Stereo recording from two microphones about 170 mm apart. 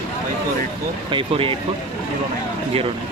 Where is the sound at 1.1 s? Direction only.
30° right (ahead or behind).